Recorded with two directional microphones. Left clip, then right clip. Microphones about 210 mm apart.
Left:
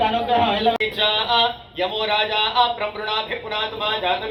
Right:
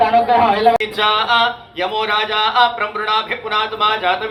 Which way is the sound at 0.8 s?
45° left (ahead or behind).